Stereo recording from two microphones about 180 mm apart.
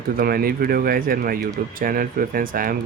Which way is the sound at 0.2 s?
55° right (ahead or behind).